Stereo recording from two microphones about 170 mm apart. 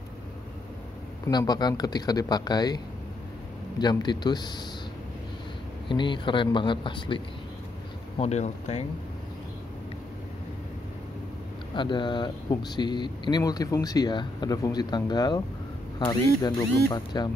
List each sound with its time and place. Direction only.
1.2 s speech: 20° left (ahead or behind)
3.8 s speech: 25° left (ahead or behind)
5.9 s speech: 30° left (ahead or behind)
11.7 s speech: 30° left (ahead or behind)